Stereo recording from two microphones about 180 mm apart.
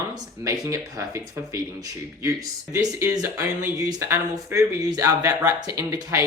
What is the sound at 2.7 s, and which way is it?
Speech, 15° right (ahead or behind).